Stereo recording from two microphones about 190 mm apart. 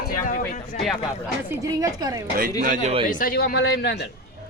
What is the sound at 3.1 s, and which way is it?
A man's voice, 45° left (ahead or behind).